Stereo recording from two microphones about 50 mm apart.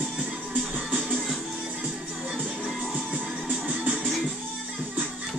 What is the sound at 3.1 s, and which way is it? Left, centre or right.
Music, right.